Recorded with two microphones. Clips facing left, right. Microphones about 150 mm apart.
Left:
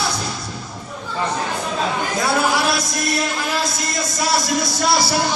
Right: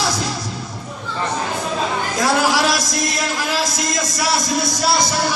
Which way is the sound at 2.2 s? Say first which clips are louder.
Right 2 dB; 90° right.